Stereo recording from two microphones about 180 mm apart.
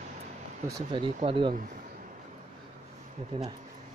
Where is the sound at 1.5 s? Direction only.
50° right (ahead or behind).